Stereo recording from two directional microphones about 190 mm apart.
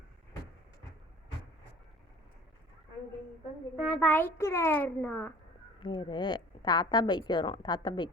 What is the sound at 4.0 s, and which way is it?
A child's voice, 10° left (ahead or behind).